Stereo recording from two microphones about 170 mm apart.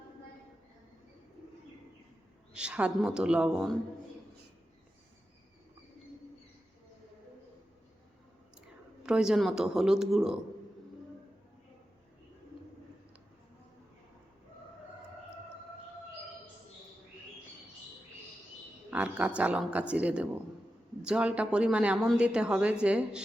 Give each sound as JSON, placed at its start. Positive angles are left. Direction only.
{"t": 2.5, "sound": "speech", "side_deg": -5}
{"t": 9.0, "sound": "speech", "side_deg": -5}
{"t": 18.9, "sound": "speech", "side_deg": -10}